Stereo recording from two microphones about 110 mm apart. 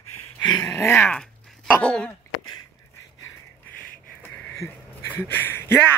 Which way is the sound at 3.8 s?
15° left (ahead or behind).